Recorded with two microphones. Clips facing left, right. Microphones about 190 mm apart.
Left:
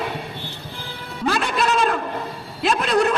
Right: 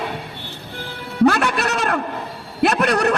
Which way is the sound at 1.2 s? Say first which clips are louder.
Right 5 dB; 70° right (ahead or behind).